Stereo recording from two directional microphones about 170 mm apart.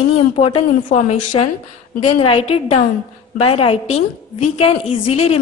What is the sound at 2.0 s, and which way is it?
A woman's voice, 35° left (ahead or behind).